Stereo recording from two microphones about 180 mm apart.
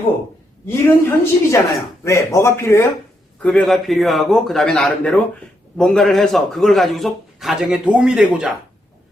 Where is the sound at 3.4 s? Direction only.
Centre (ahead or behind).